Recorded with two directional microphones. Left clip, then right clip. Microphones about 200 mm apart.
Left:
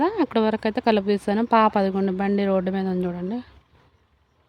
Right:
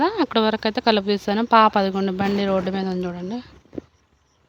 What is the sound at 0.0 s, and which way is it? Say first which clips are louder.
Speech: right 2 dB; 5° left (ahead or behind).